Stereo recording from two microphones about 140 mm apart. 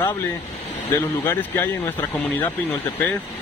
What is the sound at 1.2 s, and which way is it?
Speech, 15° left (ahead or behind).